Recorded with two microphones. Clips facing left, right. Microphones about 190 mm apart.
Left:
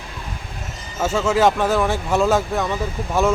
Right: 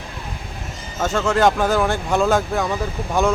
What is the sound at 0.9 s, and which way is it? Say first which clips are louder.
Speech: left 1 dB; 5° left (ahead or behind).